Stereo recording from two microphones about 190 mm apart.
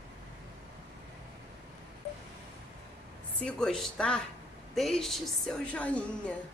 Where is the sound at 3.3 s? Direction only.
5° left (ahead or behind).